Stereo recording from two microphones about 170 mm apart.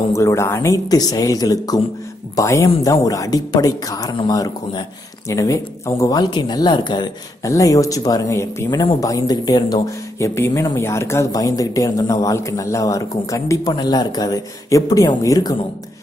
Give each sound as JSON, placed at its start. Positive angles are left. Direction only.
{"t": 0.1, "sound": "speech", "side_deg": 15}